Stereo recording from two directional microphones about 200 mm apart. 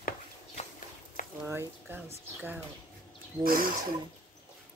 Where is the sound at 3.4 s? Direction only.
45° right (ahead or behind).